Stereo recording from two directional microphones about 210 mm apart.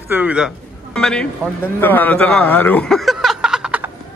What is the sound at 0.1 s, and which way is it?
A man's voice, 5° right (ahead or behind).